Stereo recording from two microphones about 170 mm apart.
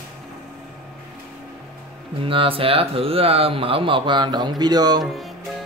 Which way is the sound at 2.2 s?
30° right (ahead or behind).